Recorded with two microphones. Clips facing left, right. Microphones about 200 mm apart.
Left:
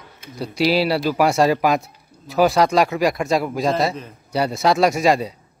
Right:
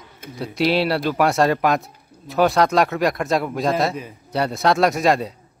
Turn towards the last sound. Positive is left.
turn(degrees=0)  # may be behind; listen again after turning